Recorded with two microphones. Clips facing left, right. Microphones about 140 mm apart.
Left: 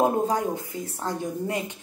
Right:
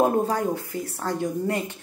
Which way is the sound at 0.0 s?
20° left (ahead or behind).